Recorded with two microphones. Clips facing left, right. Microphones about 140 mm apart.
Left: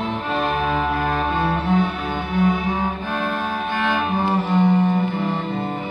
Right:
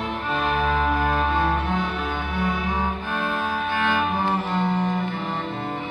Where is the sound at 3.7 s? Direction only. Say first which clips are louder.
Left 2 dB; centre (ahead or behind).